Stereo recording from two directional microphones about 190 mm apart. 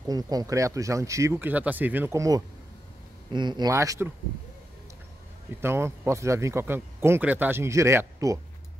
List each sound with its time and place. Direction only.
0.1 s speech: 20° right (ahead or behind)
5.6 s speech: 15° right (ahead or behind)